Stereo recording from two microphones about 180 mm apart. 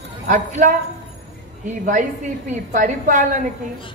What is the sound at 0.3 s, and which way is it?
Speech, 45° right (ahead or behind).